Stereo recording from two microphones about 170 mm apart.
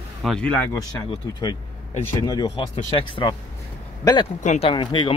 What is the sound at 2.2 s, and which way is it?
Speech, 25° left (ahead or behind).